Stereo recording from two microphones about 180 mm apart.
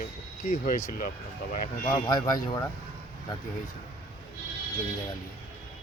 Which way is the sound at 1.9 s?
20° left (ahead or behind).